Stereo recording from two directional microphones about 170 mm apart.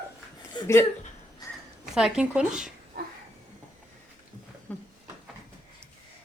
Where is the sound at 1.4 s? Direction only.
20° left (ahead or behind).